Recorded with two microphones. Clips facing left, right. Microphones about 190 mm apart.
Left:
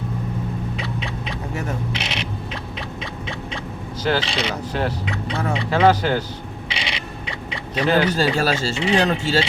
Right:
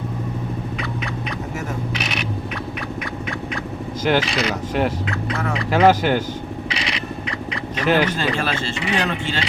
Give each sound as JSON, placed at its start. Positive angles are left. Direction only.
{"t": 0.8, "sound": "a sound", "side_deg": 30}
{"t": 4.2, "sound": "speech", "side_deg": 30}
{"t": 4.7, "sound": "speech", "side_deg": -10}
{"t": 5.3, "sound": "speech", "side_deg": 30}
{"t": 5.7, "sound": "speech", "side_deg": -10}
{"t": 6.7, "sound": "a sound", "side_deg": 25}
{"t": 8.8, "sound": "speech", "side_deg": 30}